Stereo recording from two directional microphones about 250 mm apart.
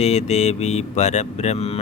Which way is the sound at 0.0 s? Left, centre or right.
Left.